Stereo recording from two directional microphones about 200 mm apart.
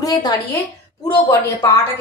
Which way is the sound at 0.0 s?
15° left (ahead or behind).